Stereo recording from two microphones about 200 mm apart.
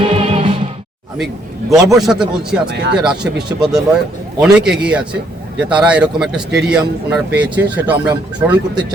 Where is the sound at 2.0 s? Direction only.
5° right (ahead or behind).